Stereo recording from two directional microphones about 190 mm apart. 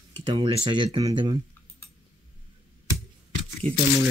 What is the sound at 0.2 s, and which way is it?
Speech, 30° right (ahead or behind).